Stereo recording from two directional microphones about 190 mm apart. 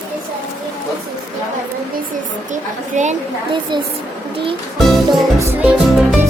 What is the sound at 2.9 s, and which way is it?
Speech, 40° right (ahead or behind).